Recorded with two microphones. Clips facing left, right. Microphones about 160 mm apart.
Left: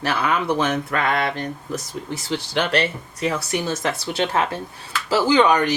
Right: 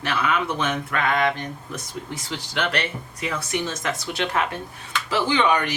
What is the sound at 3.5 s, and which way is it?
Speech, 35° left (ahead or behind).